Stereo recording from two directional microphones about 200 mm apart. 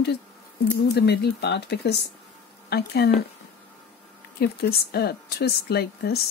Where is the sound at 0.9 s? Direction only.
55° left (ahead or behind).